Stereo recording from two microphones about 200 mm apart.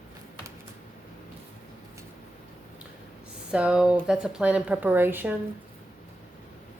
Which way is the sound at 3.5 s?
5° right (ahead or behind).